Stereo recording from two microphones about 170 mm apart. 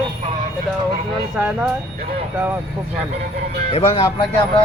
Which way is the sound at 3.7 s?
35° left (ahead or behind).